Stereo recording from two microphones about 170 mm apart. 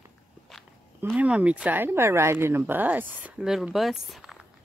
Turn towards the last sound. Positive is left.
turn(degrees=0)  # may be behind; listen again after turning